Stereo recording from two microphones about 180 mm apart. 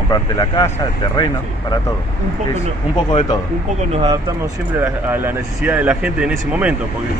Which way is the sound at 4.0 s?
20° right (ahead or behind).